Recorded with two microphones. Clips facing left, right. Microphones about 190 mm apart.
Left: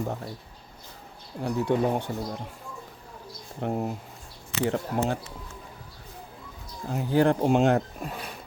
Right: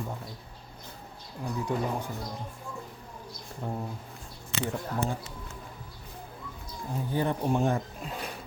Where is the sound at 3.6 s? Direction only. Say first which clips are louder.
Left 7 dB; 75° left (ahead or behind).